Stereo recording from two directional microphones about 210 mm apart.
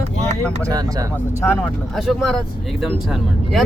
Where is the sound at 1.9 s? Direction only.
Centre (ahead or behind).